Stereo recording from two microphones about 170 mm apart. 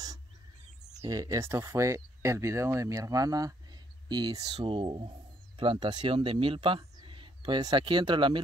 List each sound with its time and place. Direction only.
1.0 s speech: 20° right (ahead or behind)